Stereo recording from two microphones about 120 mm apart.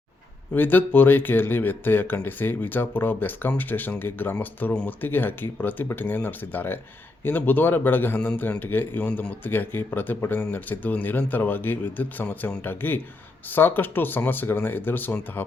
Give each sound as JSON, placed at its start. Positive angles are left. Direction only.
{"t": 0.5, "sound": "speech", "side_deg": 15}